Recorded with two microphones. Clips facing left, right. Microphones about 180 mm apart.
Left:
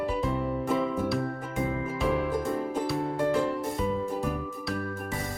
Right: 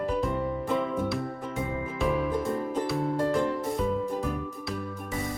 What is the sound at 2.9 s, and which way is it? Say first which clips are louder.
Music: even; centre (ahead or behind).